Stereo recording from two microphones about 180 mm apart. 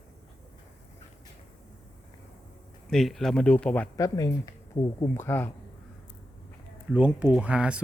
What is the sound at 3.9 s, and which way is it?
Speech, 20° left (ahead or behind).